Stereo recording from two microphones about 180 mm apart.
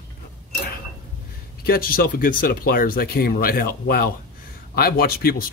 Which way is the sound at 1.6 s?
55° left (ahead or behind).